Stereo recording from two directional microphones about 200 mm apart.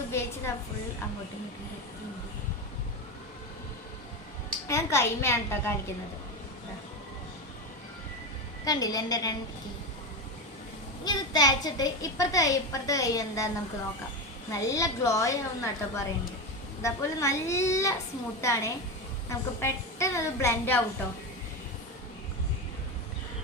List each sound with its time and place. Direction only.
0.1 s a sound: 15° left (ahead or behind)
4.7 s a child's voice: 15° left (ahead or behind)
8.6 s a woman's voice: 20° left (ahead or behind)
11.0 s a child's voice: 20° left (ahead or behind)
14.5 s a child's voice: 15° left (ahead or behind)